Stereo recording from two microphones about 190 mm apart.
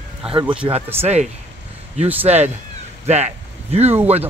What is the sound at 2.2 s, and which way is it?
Speech, 35° right (ahead or behind).